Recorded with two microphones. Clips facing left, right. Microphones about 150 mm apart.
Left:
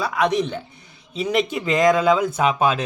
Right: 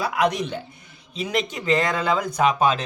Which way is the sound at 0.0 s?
Centre (ahead or behind).